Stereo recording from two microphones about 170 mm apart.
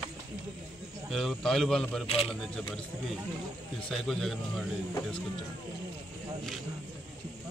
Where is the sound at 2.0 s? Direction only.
35° left (ahead or behind).